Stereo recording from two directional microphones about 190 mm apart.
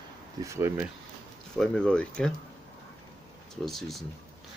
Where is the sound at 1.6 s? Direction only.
5° left (ahead or behind).